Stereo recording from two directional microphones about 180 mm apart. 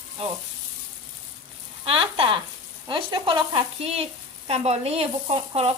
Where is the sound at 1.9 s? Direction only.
30° right (ahead or behind).